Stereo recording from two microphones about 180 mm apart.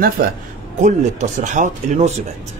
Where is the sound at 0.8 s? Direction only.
45° right (ahead or behind).